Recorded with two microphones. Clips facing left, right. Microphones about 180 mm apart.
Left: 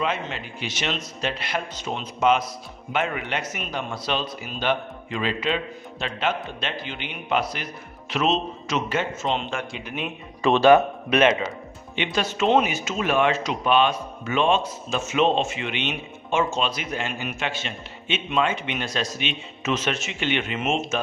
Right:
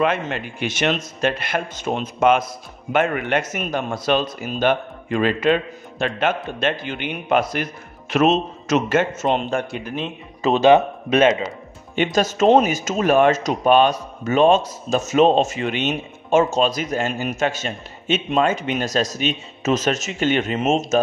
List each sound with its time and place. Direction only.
0.0 s a man's voice: 55° right (ahead or behind)
9.9 s speech: 25° right (ahead or behind)
11.9 s speech: 45° right (ahead or behind)